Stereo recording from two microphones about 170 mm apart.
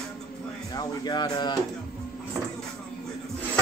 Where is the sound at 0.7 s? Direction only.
25° left (ahead or behind).